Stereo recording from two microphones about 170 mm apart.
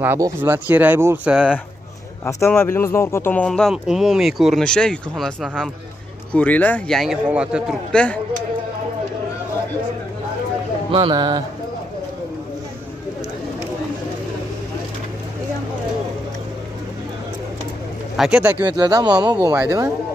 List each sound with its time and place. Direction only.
0.0 s speech: 15° right (ahead or behind)
2.2 s speech: 15° left (ahead or behind); by 7.7 s 5° right (ahead or behind)
7.9 s speech: 5° left (ahead or behind)
10.9 s speech: 30° right (ahead or behind)
18.1 s speech: 5° right (ahead or behind)
18.8 s speech: 25° right (ahead or behind)